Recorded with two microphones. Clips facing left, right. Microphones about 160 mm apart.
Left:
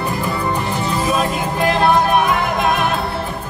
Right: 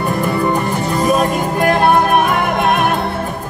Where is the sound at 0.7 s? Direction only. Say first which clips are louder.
Right 3 dB; 45° right (ahead or behind).